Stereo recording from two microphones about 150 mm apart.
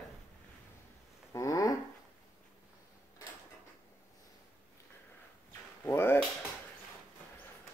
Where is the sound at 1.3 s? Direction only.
20° left (ahead or behind).